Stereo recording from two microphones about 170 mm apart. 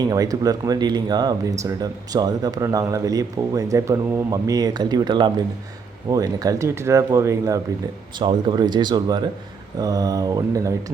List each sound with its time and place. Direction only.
0.0 s speech: 20° right (ahead or behind)